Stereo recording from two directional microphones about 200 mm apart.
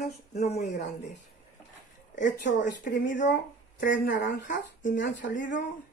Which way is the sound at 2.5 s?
60° left (ahead or behind).